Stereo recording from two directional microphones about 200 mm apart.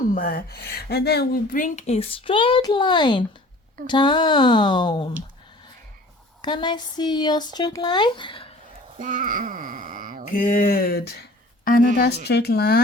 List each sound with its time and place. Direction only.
0.1 s speech: 45° left (ahead or behind); by 5.1 s 20° left (ahead or behind)
6.4 s speech: 20° left (ahead or behind)
9.0 s speech: 40° right (ahead or behind)
10.3 s a sound: 40° left (ahead or behind)
11.6 s a woman's voice: 45° left (ahead or behind)
12.2 s a sound: 55° left (ahead or behind)